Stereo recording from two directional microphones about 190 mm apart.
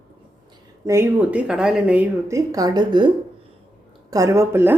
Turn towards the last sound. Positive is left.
turn(degrees=-15)  # may be behind; listen again after turning